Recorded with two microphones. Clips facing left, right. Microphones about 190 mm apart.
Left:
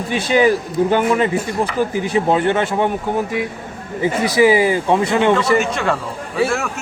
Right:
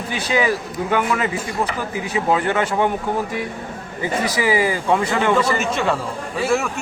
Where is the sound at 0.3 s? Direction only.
30° left (ahead or behind).